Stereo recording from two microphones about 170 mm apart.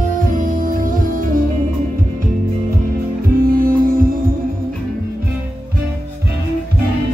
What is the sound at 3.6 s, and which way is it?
Music, 55° right (ahead or behind).